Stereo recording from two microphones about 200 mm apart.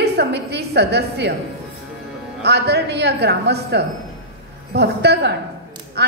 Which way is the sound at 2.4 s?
55° right (ahead or behind).